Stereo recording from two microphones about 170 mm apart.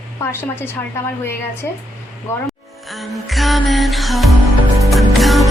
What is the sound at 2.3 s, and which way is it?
Speech, 15° left (ahead or behind).